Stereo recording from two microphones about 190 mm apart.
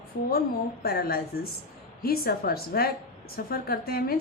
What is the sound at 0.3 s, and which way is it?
A woman's voice, 55° left (ahead or behind).